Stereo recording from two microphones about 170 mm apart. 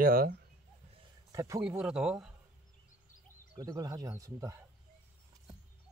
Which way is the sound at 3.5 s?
20° right (ahead or behind).